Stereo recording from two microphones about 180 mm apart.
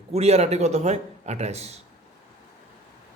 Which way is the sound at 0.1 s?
35° right (ahead or behind).